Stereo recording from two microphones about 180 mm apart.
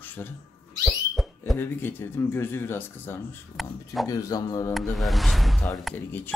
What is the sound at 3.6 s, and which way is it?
Speech, centre (ahead or behind).